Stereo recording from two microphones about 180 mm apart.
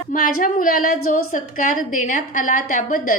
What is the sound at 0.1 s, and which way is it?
A woman's voice, 50° left (ahead or behind).